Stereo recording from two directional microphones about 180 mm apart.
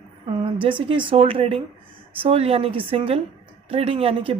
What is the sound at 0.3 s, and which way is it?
A woman's voice, 30° right (ahead or behind).